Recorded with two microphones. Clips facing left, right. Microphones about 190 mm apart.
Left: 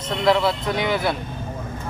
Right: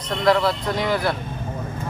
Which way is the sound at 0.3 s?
Centre (ahead or behind).